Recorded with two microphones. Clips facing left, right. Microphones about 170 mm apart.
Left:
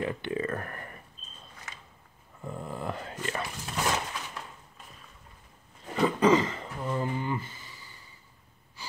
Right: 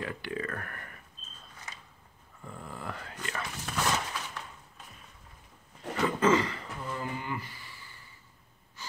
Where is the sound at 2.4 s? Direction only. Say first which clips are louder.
Left 6 dB; 25° left (ahead or behind).